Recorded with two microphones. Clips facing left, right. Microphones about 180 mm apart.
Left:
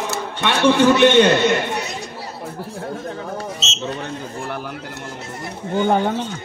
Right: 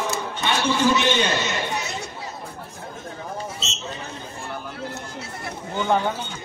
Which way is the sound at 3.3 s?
90° left.